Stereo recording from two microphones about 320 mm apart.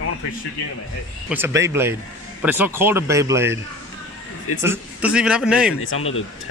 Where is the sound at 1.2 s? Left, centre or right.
Centre.